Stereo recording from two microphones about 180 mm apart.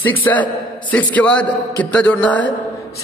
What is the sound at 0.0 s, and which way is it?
A man's voice, 10° left (ahead or behind).